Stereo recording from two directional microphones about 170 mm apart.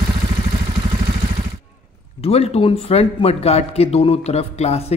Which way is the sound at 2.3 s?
35° left (ahead or behind).